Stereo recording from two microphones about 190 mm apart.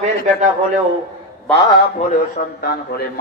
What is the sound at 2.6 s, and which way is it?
Speech, 55° left (ahead or behind).